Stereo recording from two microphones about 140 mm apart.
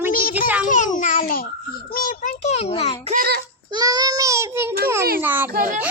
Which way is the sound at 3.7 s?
30° right (ahead or behind).